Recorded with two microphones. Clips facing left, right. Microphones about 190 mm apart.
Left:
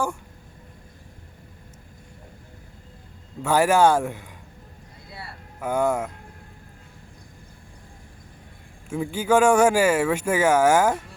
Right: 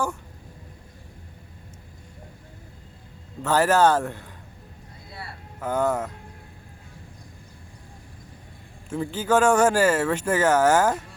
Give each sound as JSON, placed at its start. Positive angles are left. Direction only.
{"t": 3.4, "sound": "speech", "side_deg": 10}
{"t": 5.1, "sound": "a sound", "side_deg": 10}
{"t": 8.9, "sound": "speech", "side_deg": 10}